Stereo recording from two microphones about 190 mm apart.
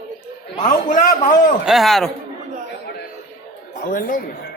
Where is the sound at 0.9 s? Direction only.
45° left (ahead or behind).